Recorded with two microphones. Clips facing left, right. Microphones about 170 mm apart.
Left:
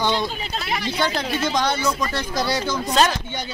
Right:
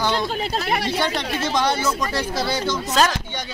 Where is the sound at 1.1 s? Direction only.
Centre (ahead or behind).